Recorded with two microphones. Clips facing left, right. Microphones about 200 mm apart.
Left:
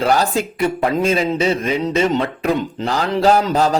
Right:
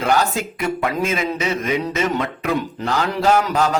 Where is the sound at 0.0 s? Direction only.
35° left (ahead or behind).